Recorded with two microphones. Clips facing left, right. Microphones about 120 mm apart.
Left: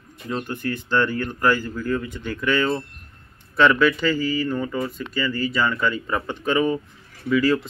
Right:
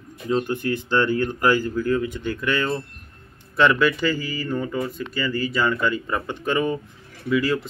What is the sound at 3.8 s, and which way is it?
Speech, 10° right (ahead or behind).